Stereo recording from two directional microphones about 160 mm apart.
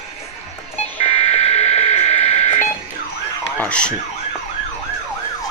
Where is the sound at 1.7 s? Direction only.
45° left (ahead or behind).